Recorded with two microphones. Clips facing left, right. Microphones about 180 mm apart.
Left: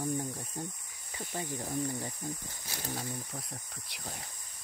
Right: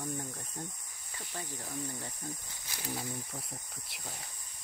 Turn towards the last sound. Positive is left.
turn(degrees=0)  # may be behind; listen again after turning